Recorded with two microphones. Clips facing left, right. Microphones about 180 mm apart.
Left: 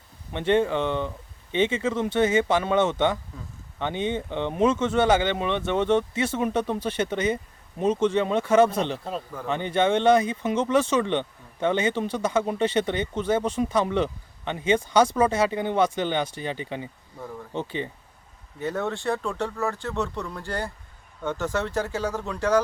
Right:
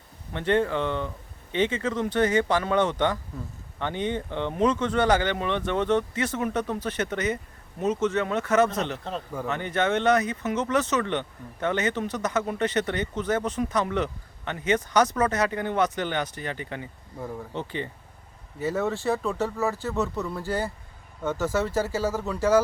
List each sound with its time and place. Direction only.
0.3 s speech: 20° left (ahead or behind)
15.0 s speech: 10° left (ahead or behind)
15.3 s speech: 25° left (ahead or behind)
18.6 s speech: 5° right (ahead or behind)